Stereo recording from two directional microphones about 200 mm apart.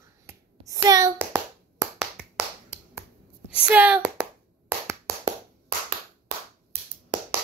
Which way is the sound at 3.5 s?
5° right (ahead or behind).